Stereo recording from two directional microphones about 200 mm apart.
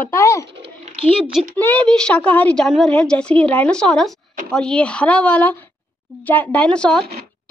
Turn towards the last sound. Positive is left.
turn(degrees=5)  # may be behind; listen again after turning